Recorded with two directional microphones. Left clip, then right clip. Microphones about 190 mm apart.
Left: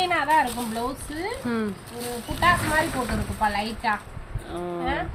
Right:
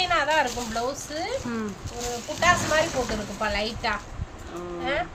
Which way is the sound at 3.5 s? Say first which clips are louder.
Left 1 dB; 45° right (ahead or behind).